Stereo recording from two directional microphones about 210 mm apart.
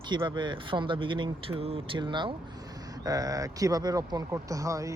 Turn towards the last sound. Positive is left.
turn(degrees=-15)  # may be behind; listen again after turning